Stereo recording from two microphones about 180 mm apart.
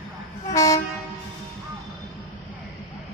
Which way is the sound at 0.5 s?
20° left (ahead or behind).